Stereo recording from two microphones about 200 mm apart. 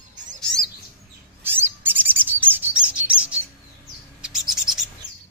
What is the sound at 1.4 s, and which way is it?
Bird, 10° right (ahead or behind).